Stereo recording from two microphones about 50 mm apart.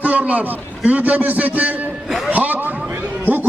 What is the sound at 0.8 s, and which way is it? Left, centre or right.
A man's voice, right.